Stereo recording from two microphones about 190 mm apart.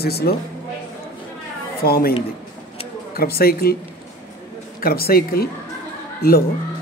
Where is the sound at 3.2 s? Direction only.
55° left (ahead or behind).